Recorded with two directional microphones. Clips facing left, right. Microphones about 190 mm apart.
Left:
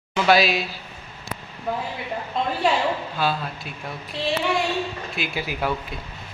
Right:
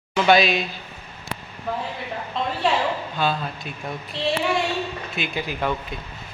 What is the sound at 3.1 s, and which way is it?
Speech, 5° left (ahead or behind).